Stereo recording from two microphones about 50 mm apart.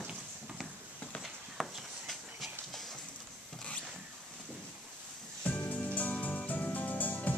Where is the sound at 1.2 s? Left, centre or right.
Centre.